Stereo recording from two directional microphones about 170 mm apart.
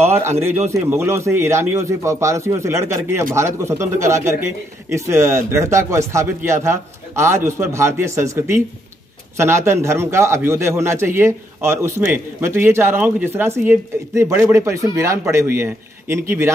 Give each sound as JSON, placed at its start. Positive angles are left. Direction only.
{"t": 0.0, "sound": "a man's voice", "side_deg": -15}